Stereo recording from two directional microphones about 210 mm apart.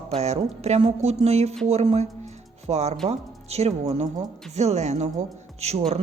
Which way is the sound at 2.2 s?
30° right (ahead or behind).